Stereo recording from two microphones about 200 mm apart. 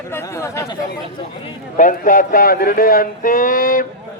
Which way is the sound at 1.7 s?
40° left (ahead or behind).